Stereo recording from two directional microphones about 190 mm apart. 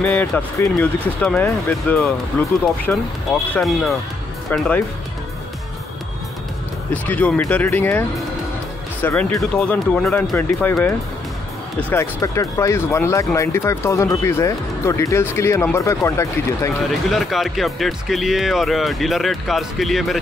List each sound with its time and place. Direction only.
0.0 s speech: 10° left (ahead or behind)
6.9 s speech: 10° left (ahead or behind)
9.0 s speech: 10° left (ahead or behind)
17.1 s speech: centre (ahead or behind)